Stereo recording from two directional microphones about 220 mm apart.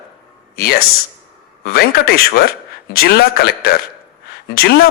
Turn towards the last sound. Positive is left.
turn(degrees=45)  # may be behind; listen again after turning